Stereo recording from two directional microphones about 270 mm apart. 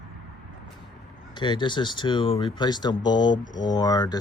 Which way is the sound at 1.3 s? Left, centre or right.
Centre.